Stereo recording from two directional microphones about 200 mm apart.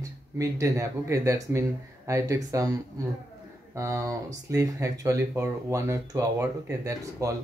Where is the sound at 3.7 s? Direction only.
15° right (ahead or behind).